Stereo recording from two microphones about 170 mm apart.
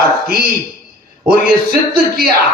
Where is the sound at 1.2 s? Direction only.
60° right (ahead or behind).